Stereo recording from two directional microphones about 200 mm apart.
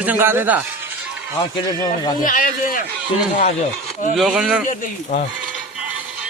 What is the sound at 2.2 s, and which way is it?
Speech, 45° left (ahead or behind).